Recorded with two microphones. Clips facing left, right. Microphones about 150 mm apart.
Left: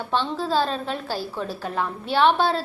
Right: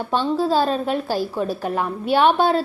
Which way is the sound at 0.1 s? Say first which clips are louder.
Right 4 dB; 10° right (ahead or behind).